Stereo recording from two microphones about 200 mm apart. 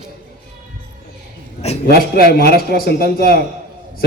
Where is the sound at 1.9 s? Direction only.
50° left (ahead or behind).